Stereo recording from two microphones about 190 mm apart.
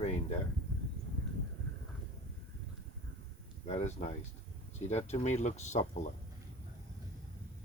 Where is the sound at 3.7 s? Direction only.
35° left (ahead or behind).